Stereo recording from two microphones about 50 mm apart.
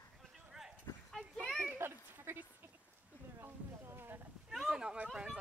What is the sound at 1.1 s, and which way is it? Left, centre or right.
Speech, centre.